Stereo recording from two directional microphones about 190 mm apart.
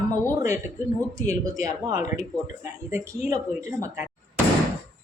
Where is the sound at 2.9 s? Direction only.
15° right (ahead or behind).